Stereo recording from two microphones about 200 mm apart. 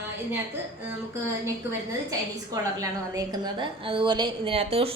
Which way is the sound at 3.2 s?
20° right (ahead or behind).